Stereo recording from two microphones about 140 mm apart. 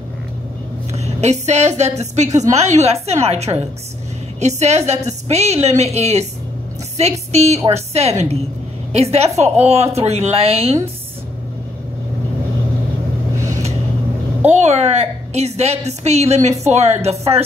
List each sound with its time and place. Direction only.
0.9 s a woman's voice: 50° right (ahead or behind)
14.5 s a woman's voice: 50° right (ahead or behind)